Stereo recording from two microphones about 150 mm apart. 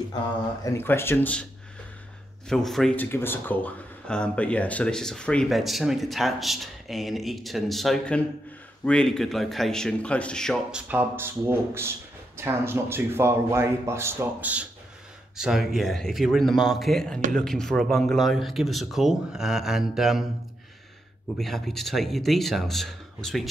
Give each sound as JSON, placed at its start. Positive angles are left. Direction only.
{"t": 0.7, "sound": "speech", "side_deg": 15}
{"t": 2.5, "sound": "speech", "side_deg": 0}
{"t": 10.7, "sound": "speech", "side_deg": -10}
{"t": 21.4, "sound": "speech", "side_deg": 0}